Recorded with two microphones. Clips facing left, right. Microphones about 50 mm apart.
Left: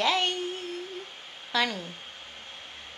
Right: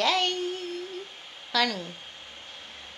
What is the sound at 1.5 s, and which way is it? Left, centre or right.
Speech, left.